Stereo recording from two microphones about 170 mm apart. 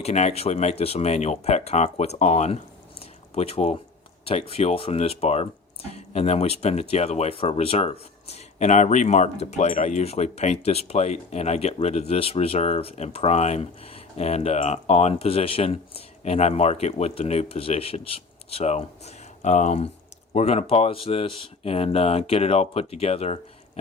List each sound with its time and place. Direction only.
0.0 s speech: 40° left (ahead or behind)